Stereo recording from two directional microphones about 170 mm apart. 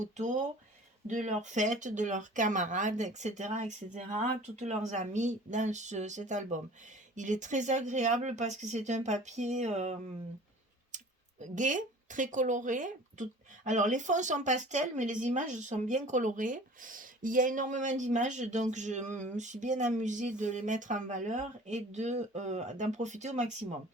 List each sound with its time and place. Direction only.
0.0 s speech: 45° right (ahead or behind)